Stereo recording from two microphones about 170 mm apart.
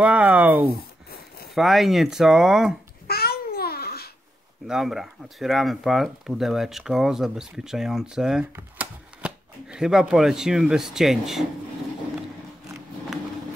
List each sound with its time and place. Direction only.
0.0 s speech: 10° right (ahead or behind)
3.1 s babbling: 65° left (ahead or behind)
4.6 s speech: centre (ahead or behind)